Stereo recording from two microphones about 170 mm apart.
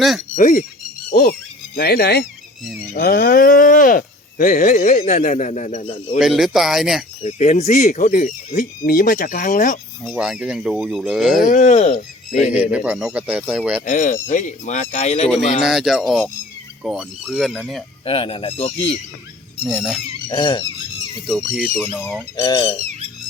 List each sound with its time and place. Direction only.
0.3 s speech: 50° left (ahead or behind)
6.1 s speech: centre (ahead or behind)
7.2 s speech: 40° left (ahead or behind)
10.0 s speech: centre (ahead or behind)
11.4 s speech: 45° left (ahead or behind)
12.3 s speech: 5° right (ahead or behind)
13.8 s speech: 50° left (ahead or behind)
15.6 s speech: centre (ahead or behind)
18.0 s speech: 35° left (ahead or behind)
19.6 s speech: 5° right (ahead or behind)
20.2 s squeak: 25° left (ahead or behind)
21.2 s speech: centre (ahead or behind)
22.4 s squeak: 20° left (ahead or behind)
22.8 s squawk: 40° right (ahead or behind)